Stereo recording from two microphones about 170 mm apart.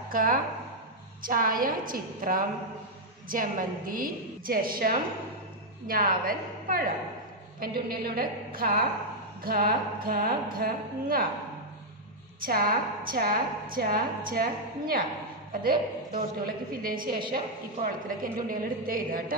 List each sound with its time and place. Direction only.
0.1 s a woman's voice: 55° right (ahead or behind)
12.4 s a woman's voice: 60° right (ahead or behind)